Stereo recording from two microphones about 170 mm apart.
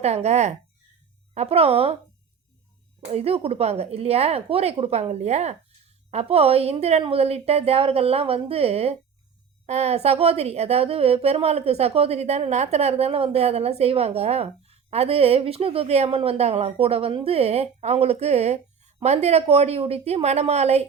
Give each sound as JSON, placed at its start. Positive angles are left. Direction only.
{"t": 0.0, "sound": "speech", "side_deg": -40}
{"t": 3.0, "sound": "speech", "side_deg": -35}